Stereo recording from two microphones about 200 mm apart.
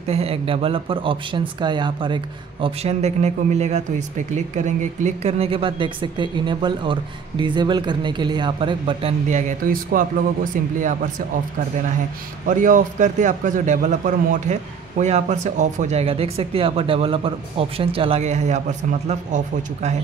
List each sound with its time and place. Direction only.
0.0 s speech: 30° right (ahead or behind)
9.3 s a man's voice: 40° right (ahead or behind)
12.4 s a man's voice: 40° right (ahead or behind)